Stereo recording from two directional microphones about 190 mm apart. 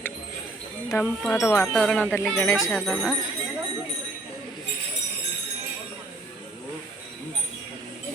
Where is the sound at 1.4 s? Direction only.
15° left (ahead or behind).